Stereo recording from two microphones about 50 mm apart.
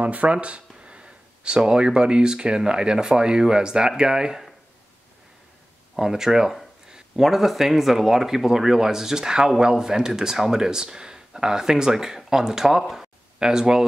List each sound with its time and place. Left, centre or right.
0.0 s speech: right
5.9 s speech: centre